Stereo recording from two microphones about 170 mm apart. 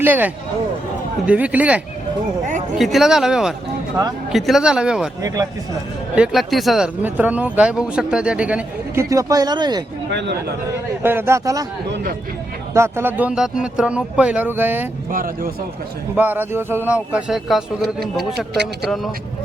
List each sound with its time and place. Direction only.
0.0 s speech: 10° right (ahead or behind)
1.3 s speech: 10° right (ahead or behind)
5.2 s speech: 20° right (ahead or behind)
6.1 s speech: 5° right (ahead or behind)
9.0 s speech: 20° right (ahead or behind)
10.1 s speech: 90° right
10.7 s speech: 15° right (ahead or behind)
12.7 s speech: 15° right (ahead or behind)
15.1 s speech: 55° right (ahead or behind)
16.1 s speech: 10° right (ahead or behind)
18.3 s speech: 80° right